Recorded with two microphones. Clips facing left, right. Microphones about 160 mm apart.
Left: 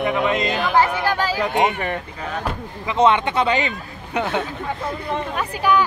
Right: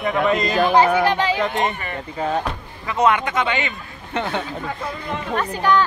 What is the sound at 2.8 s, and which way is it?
Speech, 25° left (ahead or behind).